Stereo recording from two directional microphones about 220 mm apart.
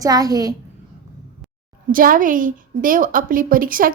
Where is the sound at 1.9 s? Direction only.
40° right (ahead or behind).